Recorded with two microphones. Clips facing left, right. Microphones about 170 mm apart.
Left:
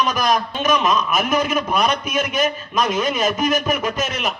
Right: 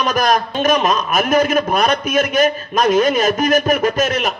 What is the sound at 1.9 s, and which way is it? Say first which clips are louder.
A man's voice: right 5 dB; 80° right.